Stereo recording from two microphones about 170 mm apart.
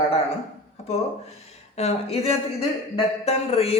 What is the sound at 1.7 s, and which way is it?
A man's voice, 35° left (ahead or behind).